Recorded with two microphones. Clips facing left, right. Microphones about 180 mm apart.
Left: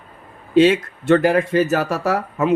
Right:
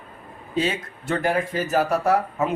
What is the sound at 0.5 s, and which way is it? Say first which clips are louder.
Speech: left 11 dB; 85° left.